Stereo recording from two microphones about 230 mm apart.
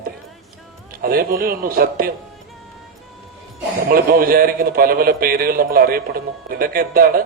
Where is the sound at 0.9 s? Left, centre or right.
Right.